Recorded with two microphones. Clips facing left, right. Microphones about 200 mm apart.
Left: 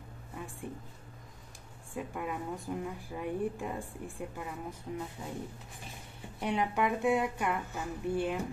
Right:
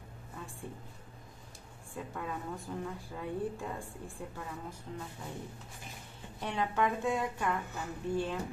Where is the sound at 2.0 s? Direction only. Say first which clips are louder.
Left 3 dB; 15° left (ahead or behind).